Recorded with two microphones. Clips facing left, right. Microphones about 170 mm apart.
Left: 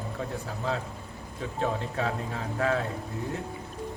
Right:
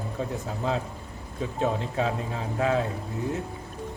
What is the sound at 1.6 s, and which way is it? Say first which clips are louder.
A man's voice: right 3 dB; 20° right (ahead or behind).